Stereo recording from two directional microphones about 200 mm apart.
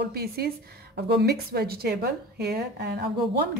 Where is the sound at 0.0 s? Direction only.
50° right (ahead or behind).